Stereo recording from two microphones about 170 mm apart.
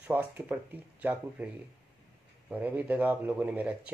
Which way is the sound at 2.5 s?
10° right (ahead or behind).